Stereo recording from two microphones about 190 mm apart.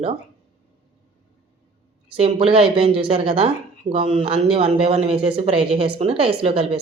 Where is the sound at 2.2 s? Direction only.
30° right (ahead or behind).